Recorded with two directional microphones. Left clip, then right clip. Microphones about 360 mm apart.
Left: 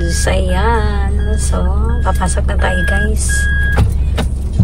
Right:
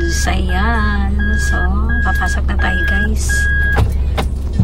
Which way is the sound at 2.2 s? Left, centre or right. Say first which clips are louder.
Left 1 dB; centre.